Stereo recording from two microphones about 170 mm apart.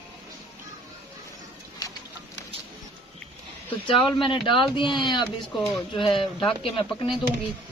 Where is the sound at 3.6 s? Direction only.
30° left (ahead or behind).